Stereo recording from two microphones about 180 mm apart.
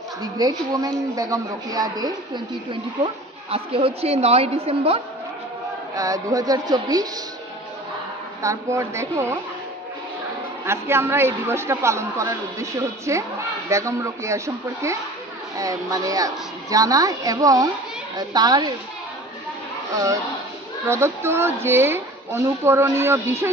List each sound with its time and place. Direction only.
0.2 s a woman's voice: 20° right (ahead or behind)
5.9 s a woman's voice: 20° right (ahead or behind)
8.4 s a woman's voice: 15° right (ahead or behind)
10.6 s a woman's voice: 15° right (ahead or behind)
19.9 s a woman's voice: 20° right (ahead or behind)